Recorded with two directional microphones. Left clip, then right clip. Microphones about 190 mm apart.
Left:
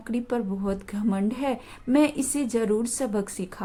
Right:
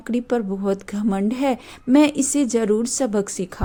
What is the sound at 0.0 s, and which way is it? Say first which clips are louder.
Speech: right 6 dB; 30° right (ahead or behind).